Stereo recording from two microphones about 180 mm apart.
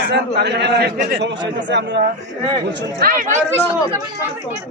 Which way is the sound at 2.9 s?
50° right (ahead or behind).